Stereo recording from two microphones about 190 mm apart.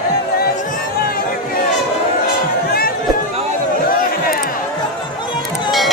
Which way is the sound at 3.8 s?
50° left (ahead or behind).